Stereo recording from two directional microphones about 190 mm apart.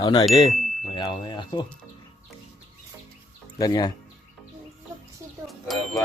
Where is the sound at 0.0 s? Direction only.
25° left (ahead or behind).